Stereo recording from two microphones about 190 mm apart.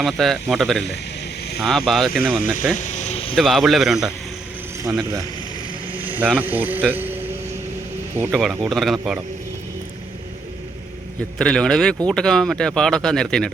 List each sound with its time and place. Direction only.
0.0 s speech: centre (ahead or behind)
2.7 s vehicle: 40° left (ahead or behind)
3.3 s speech: centre (ahead or behind)
4.8 s speech: 15° right (ahead or behind)
8.3 s speech: centre (ahead or behind)
11.3 s speech: 5° left (ahead or behind)